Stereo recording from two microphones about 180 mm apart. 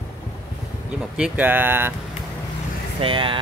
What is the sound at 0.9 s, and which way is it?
Speech, 5° right (ahead or behind).